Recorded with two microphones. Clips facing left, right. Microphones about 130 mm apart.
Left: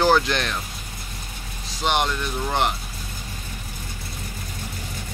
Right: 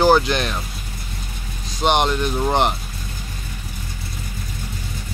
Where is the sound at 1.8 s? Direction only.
20° right (ahead or behind).